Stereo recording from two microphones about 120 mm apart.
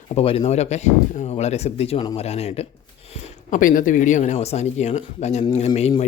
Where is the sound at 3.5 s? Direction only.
90° left; by 5.9 s 60° left (ahead or behind).